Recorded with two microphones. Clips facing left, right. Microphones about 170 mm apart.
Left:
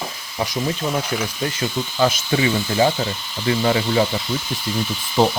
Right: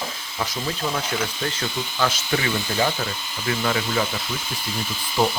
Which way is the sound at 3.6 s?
30° left (ahead or behind).